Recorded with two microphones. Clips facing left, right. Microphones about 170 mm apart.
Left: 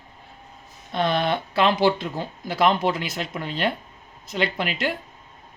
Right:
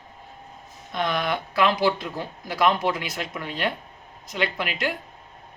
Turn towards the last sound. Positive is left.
turn(degrees=25)  # may be behind; listen again after turning